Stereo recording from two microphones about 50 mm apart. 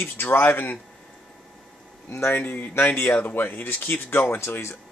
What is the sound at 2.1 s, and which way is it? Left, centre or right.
Speech, left.